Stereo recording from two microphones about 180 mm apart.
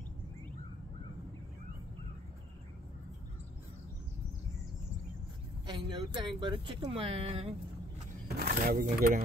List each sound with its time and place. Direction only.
5.7 s speech: 25° right (ahead or behind)
8.4 s speech: 55° right (ahead or behind)